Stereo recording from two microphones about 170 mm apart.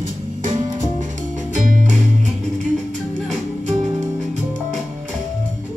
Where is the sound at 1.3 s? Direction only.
50° right (ahead or behind).